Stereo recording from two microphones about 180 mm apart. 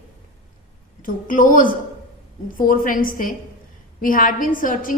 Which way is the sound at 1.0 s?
50° left (ahead or behind).